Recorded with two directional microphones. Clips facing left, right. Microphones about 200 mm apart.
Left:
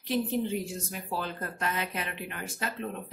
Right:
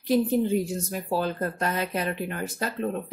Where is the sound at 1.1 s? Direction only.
40° right (ahead or behind).